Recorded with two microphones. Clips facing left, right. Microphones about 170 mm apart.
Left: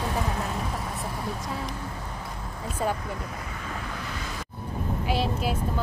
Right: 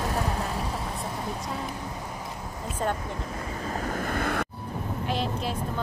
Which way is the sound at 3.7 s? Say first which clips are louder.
Right 8 dB; 45° right (ahead or behind).